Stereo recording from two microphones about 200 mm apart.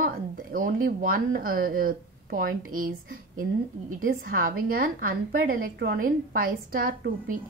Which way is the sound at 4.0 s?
45° right (ahead or behind).